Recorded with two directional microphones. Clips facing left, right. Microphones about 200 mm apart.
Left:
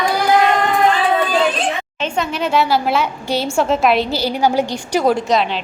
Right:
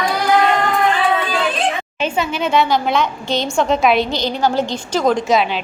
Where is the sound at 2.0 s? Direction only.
5° right (ahead or behind); by 5.2 s 10° left (ahead or behind).